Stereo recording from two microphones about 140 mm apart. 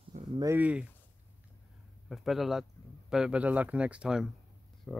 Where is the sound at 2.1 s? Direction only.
Centre (ahead or behind).